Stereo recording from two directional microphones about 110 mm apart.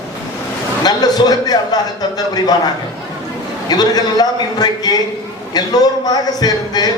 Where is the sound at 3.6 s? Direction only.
40° left (ahead or behind).